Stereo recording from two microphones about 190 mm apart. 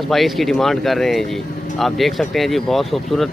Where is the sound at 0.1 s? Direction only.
Centre (ahead or behind).